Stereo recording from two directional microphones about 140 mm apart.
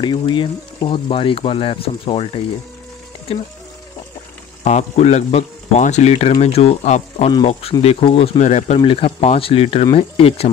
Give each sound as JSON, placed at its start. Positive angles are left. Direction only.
{"t": 0.0, "sound": "speech", "side_deg": 35}
{"t": 4.6, "sound": "speech", "side_deg": 55}
{"t": 7.8, "sound": "speech", "side_deg": 45}
{"t": 8.4, "sound": "speech", "side_deg": 55}
{"t": 8.7, "sound": "speech", "side_deg": 40}